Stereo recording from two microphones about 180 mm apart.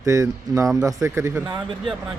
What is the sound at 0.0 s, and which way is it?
Speech, 15° right (ahead or behind).